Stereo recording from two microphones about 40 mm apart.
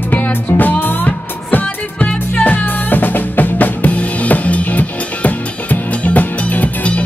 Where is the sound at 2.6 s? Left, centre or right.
Left.